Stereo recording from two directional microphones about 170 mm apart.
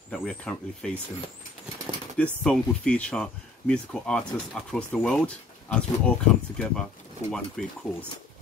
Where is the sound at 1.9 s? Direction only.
30° right (ahead or behind).